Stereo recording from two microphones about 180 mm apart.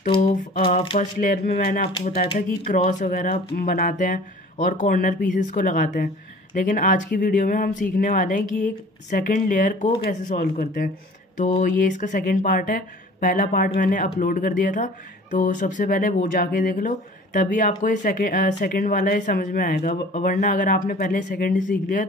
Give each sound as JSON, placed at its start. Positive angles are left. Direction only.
{"t": 0.0, "sound": "a sound", "side_deg": 30}
{"t": 0.9, "sound": "speech", "side_deg": 55}
{"t": 2.3, "sound": "speech", "side_deg": 45}
{"t": 19.8, "sound": "speech", "side_deg": 40}